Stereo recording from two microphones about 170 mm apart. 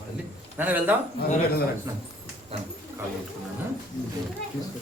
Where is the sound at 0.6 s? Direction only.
10° right (ahead or behind).